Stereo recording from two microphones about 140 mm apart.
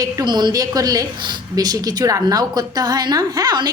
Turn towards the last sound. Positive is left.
turn(degrees=-30)  # may be behind; listen again after turning